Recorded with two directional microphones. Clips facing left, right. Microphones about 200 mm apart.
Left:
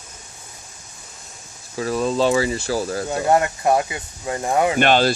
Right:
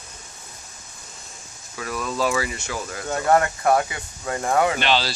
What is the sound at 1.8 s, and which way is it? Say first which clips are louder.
Speech: left 6 dB; 30° left (ahead or behind).